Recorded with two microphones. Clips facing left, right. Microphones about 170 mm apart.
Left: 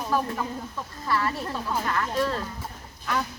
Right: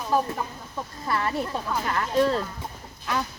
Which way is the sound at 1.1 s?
25° right (ahead or behind).